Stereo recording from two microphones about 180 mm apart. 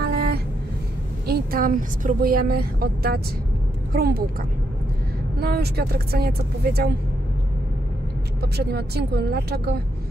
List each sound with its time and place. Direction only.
0.0 s a sound: 60° right (ahead or behind)
1.2 s speech: 55° right (ahead or behind)
8.4 s speech: 65° right (ahead or behind)